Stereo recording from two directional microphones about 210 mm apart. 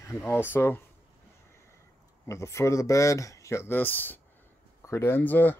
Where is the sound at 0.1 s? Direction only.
10° left (ahead or behind).